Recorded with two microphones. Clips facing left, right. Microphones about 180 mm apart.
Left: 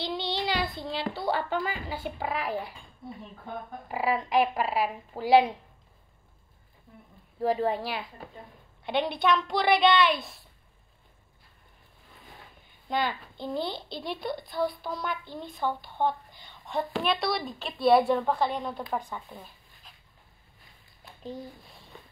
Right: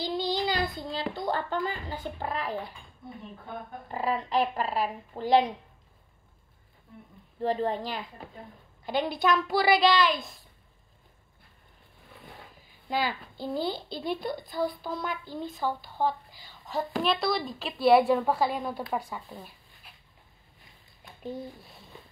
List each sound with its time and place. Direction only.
0.0 s speech: centre (ahead or behind)
3.9 s speech: 10° left (ahead or behind)
7.3 s a woman's voice: 10° left (ahead or behind)
12.5 s a sound: 5° right (ahead or behind)
13.7 s a woman's voice: centre (ahead or behind)
19.3 s dog: centre (ahead or behind)